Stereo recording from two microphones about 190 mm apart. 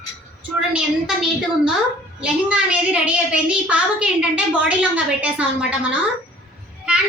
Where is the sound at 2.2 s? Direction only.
5° right (ahead or behind).